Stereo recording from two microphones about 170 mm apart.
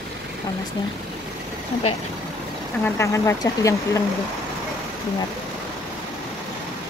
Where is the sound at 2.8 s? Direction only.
15° left (ahead or behind).